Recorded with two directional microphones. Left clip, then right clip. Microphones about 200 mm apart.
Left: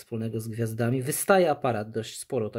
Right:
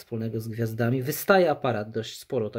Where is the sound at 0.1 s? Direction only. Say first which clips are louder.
Right 1 dB; 5° left (ahead or behind).